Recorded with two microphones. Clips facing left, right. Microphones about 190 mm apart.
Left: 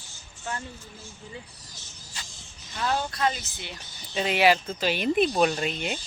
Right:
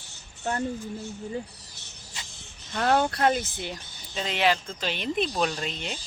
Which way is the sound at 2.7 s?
65° right (ahead or behind).